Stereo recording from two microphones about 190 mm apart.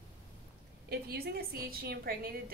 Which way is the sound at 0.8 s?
55° right (ahead or behind).